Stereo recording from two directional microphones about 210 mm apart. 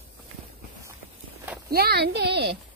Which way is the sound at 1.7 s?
50° right (ahead or behind).